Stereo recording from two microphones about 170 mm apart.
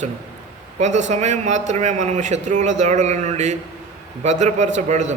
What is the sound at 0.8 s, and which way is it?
A man's voice, 45° right (ahead or behind).